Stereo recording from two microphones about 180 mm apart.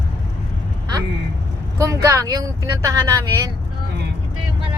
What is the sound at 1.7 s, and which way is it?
Speech, 20° right (ahead or behind).